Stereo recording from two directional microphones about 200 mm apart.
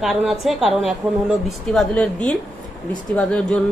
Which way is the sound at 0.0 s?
Centre (ahead or behind).